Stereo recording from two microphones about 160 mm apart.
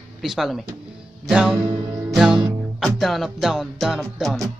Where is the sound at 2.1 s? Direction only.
5° right (ahead or behind).